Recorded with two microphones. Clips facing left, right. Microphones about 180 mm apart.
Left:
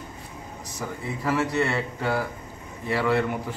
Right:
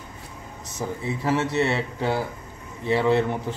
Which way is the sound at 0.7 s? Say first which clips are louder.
Right 4 dB; 25° right (ahead or behind).